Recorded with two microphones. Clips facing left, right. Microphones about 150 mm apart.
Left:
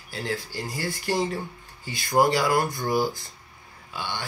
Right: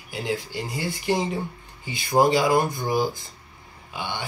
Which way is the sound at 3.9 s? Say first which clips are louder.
Right 2 dB; 15° right (ahead or behind).